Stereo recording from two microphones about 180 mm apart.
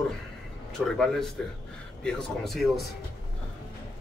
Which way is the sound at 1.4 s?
5° left (ahead or behind).